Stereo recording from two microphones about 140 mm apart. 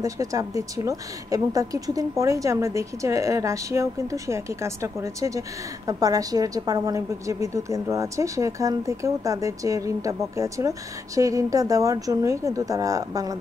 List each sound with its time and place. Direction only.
0.0 s a woman's voice: 25° right (ahead or behind)